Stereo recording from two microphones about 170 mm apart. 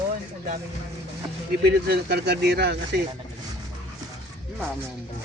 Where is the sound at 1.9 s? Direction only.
70° right (ahead or behind).